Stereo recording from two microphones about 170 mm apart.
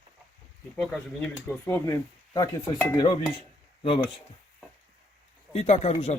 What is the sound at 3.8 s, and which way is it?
Speech, 30° left (ahead or behind).